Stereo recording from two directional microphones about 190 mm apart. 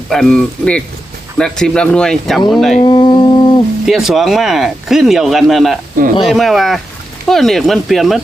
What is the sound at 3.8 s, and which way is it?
Speech, centre (ahead or behind).